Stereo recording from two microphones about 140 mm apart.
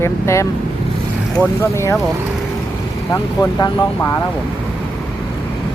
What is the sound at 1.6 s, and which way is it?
Speech, 20° left (ahead or behind).